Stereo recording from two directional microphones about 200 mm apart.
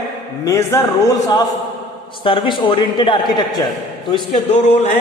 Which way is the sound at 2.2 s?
25° left (ahead or behind).